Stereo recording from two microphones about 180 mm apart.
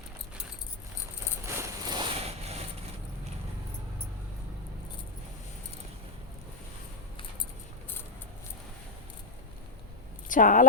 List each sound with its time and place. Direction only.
1.5 s vehicle: 20° right (ahead or behind); by 2.6 s 35° right (ahead or behind)
10.2 s a woman's voice: 45° left (ahead or behind)